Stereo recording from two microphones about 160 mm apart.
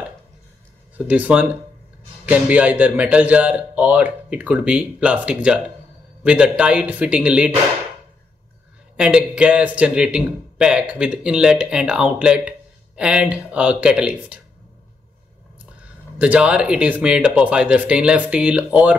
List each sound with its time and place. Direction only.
0.9 s a man's voice: 10° right (ahead or behind)
8.9 s a man's voice: 5° right (ahead or behind)
16.2 s a man's voice: 5° right (ahead or behind)